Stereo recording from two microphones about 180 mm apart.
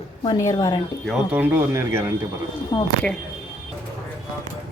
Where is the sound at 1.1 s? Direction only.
10° right (ahead or behind).